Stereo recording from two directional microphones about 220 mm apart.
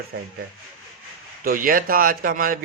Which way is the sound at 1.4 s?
40° right (ahead or behind).